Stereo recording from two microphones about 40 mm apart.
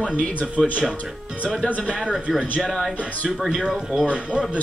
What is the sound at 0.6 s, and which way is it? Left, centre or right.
Speech, centre.